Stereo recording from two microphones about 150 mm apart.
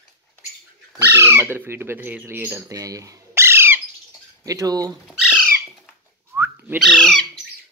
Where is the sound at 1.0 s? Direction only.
15° right (ahead or behind).